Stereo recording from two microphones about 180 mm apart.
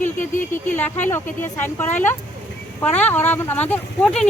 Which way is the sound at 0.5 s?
10° left (ahead or behind).